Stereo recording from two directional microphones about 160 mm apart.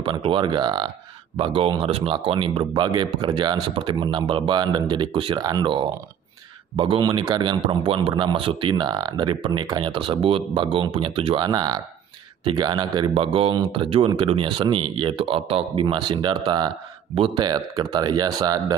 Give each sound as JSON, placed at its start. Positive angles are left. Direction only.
{"t": 0.0, "sound": "a man's voice", "side_deg": -30}